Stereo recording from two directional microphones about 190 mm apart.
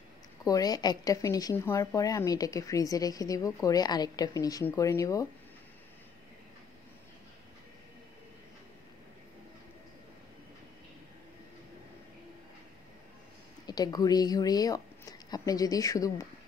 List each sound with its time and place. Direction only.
0.4 s a woman's voice: 20° left (ahead or behind)
13.7 s speech: 20° left (ahead or behind)